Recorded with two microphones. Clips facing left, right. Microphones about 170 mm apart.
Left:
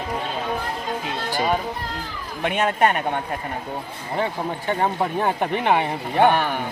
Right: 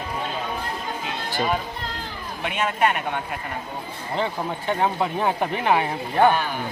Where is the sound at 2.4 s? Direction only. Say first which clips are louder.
Left 3 dB; 45° left (ahead or behind).